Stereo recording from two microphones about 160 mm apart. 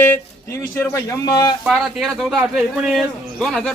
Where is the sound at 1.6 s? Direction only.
Centre (ahead or behind).